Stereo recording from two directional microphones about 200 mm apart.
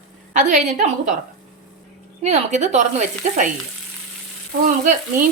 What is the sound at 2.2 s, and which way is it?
Speech, 35° right (ahead or behind).